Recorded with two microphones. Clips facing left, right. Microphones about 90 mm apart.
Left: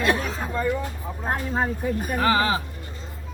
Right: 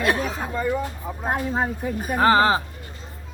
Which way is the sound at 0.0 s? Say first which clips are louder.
Right 1 dB; 10° right (ahead or behind).